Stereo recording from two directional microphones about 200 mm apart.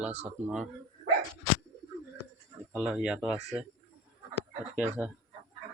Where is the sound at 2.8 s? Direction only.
5° right (ahead or behind).